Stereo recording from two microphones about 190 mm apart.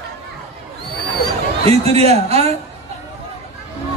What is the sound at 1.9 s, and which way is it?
Speech, 30° right (ahead or behind).